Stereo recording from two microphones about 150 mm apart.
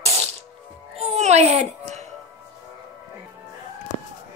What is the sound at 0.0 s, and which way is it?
Music, 45° right (ahead or behind).